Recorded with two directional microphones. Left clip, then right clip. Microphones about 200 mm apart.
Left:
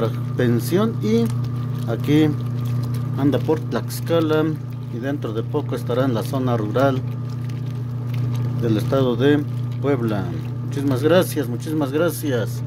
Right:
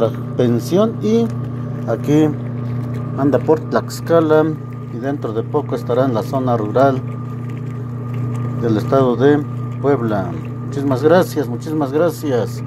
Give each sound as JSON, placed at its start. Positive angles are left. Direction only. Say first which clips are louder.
{"t": 0.0, "sound": "speech", "louder": "right 6 dB", "side_deg": 0}
{"t": 3.2, "sound": "speech", "louder": "right 5 dB", "side_deg": 25}
{"t": 3.4, "sound": "speech", "louder": "right 7 dB", "side_deg": 5}
{"t": 4.2, "sound": "speech", "louder": "right 7 dB", "side_deg": 25}
{"t": 5.2, "sound": "speech", "louder": "right 5 dB", "side_deg": 5}
{"t": 8.6, "sound": "speech", "louder": "right 5 dB", "side_deg": 5}
{"t": 10.8, "sound": "speech", "louder": "right 4 dB", "side_deg": 5}